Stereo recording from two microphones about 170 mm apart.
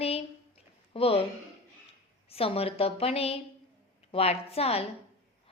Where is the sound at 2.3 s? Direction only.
35° left (ahead or behind).